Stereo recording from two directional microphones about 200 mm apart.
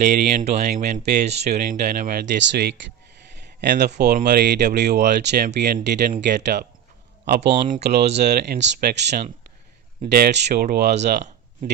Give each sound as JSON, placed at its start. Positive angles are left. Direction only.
{"t": 0.0, "sound": "speech", "side_deg": -35}